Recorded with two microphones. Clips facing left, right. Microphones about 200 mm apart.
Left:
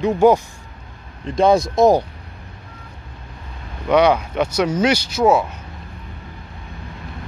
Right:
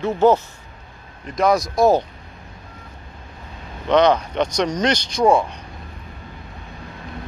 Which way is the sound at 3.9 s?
10° left (ahead or behind).